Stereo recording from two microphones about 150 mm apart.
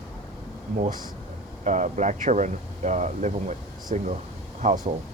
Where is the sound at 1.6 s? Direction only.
50° right (ahead or behind).